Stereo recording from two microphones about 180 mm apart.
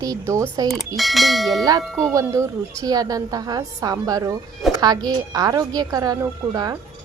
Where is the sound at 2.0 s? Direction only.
15° right (ahead or behind).